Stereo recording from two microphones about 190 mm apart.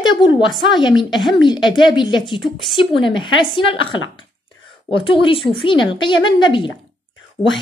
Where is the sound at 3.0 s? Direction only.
25° left (ahead or behind).